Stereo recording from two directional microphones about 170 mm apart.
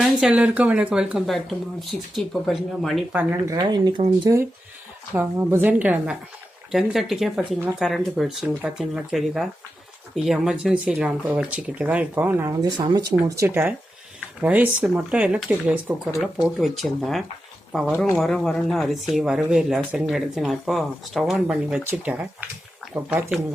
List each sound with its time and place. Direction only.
0.0 s speech: 5° right (ahead or behind)
3.5 s speech: 25° right (ahead or behind)
5.1 s speech: 10° right (ahead or behind)
12.5 s speech: 25° right (ahead or behind); by 23.4 s 10° right (ahead or behind)